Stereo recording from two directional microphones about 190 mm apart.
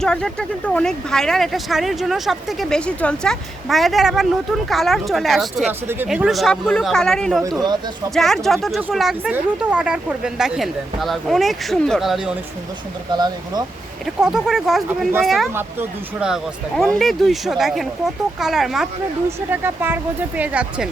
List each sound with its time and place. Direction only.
0.0 s speech: 5° left (ahead or behind)
7.4 s speech: 20° right (ahead or behind)
8.1 s speech: centre (ahead or behind)
13.1 s speech: 20° right (ahead or behind)
14.0 s speech: 5° right (ahead or behind)